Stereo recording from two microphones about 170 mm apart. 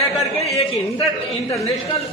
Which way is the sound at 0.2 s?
35° left (ahead or behind).